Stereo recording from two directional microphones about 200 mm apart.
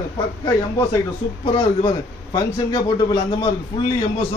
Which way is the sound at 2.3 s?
20° left (ahead or behind).